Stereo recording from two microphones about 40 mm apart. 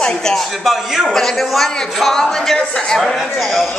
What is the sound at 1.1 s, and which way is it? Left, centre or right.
A man's voice, centre.